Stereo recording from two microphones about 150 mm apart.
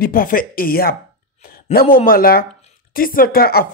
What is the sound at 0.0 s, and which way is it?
Speech, 70° left (ahead or behind).